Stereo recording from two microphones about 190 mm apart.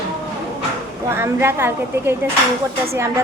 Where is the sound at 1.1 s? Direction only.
15° right (ahead or behind).